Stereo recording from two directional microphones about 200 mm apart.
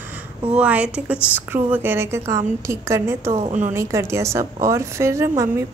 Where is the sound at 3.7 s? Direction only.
15° right (ahead or behind).